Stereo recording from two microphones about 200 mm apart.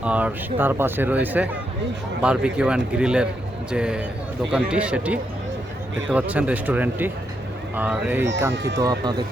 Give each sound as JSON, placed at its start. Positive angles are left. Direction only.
{"t": 0.0, "sound": "speech", "side_deg": -5}
{"t": 8.8, "sound": "speech", "side_deg": -20}